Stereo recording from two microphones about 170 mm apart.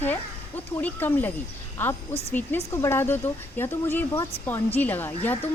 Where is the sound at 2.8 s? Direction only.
15° left (ahead or behind).